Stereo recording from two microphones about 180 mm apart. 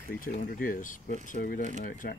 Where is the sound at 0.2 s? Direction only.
50° left (ahead or behind).